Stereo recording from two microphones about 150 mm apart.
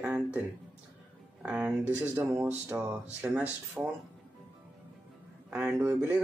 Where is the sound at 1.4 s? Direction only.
10° right (ahead or behind).